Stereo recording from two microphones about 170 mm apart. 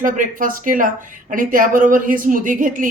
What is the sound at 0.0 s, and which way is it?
A woman's voice, 50° right (ahead or behind).